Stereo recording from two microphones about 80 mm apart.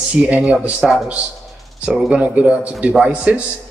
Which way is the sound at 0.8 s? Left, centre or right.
Centre.